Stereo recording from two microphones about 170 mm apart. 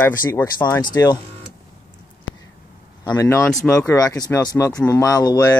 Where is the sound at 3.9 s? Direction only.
20° left (ahead or behind).